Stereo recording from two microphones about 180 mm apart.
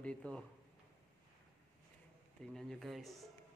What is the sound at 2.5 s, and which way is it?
Speech, centre (ahead or behind).